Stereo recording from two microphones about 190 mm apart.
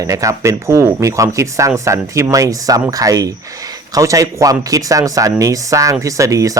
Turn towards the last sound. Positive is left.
turn(degrees=-15)  # may be behind; listen again after turning